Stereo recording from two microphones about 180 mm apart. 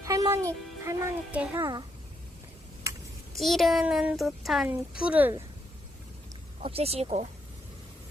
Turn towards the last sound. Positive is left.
turn(degrees=-35)  # may be behind; listen again after turning